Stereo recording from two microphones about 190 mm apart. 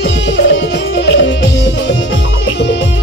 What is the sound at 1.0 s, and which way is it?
Music, 70° left (ahead or behind).